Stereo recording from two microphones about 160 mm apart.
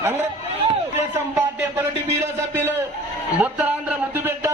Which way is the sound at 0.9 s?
15° right (ahead or behind).